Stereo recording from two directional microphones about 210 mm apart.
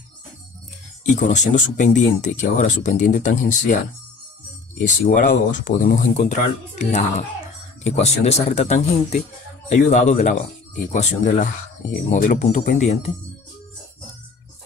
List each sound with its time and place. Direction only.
1.0 s speech: 35° left (ahead or behind)
4.8 s speech: 40° left (ahead or behind)